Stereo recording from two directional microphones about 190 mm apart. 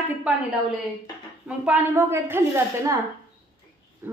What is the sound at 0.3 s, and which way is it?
Speech, 5° right (ahead or behind).